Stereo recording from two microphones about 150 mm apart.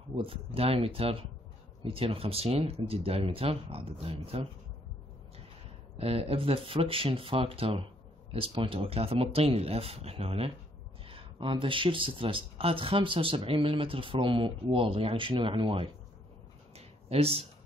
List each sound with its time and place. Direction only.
0.1 s speech: 40° right (ahead or behind)
5.9 s speech: 40° right (ahead or behind)
16.7 s a sound: 40° right (ahead or behind)